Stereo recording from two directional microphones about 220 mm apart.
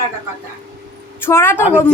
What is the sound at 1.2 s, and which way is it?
Speech, 10° left (ahead or behind).